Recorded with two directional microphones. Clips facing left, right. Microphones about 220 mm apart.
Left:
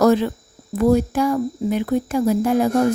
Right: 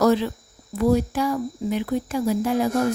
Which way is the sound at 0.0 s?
50° left (ahead or behind).